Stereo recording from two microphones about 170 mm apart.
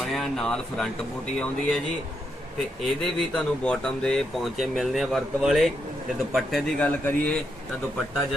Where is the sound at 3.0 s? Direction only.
5° left (ahead or behind).